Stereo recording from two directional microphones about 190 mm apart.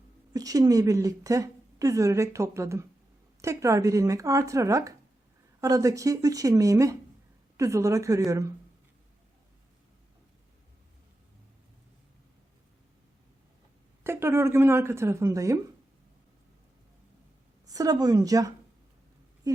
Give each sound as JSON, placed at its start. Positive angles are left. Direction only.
{"t": 0.3, "sound": "a woman's voice", "side_deg": -20}
{"t": 14.0, "sound": "a woman's voice", "side_deg": -15}
{"t": 17.7, "sound": "speech", "side_deg": -20}
{"t": 19.4, "sound": "a sound", "side_deg": -20}